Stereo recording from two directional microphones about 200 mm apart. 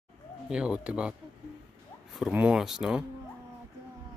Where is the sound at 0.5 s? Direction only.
5° right (ahead or behind).